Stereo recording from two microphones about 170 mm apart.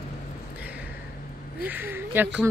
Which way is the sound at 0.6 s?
10° right (ahead or behind).